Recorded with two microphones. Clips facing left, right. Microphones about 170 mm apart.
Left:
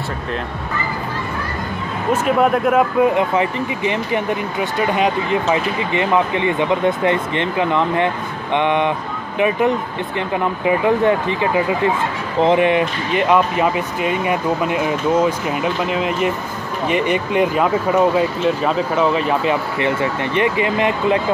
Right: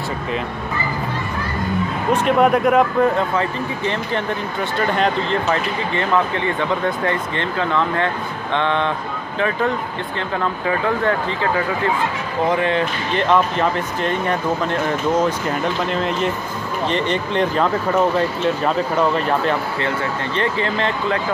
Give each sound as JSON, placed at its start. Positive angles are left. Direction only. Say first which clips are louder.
{"t": 2.2, "sound": "speech", "louder": "right 1 dB", "side_deg": 0}
{"t": 3.2, "sound": "speech", "louder": "left 3 dB", "side_deg": 15}
{"t": 19.8, "sound": "speech", "louder": "left 3 dB", "side_deg": 15}